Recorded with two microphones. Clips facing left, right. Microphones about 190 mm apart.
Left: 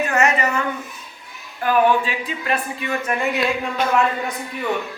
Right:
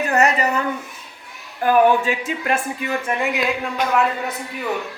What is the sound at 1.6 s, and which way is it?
Speech, 45° right (ahead or behind).